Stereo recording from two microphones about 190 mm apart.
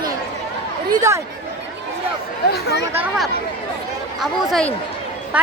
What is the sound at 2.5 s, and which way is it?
Speech, 55° left (ahead or behind).